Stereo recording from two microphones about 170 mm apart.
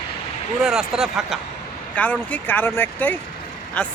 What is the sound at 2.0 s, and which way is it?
Speech, 10° left (ahead or behind).